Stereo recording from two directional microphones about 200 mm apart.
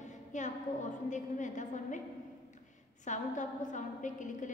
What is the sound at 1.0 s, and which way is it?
Speech, 40° left (ahead or behind).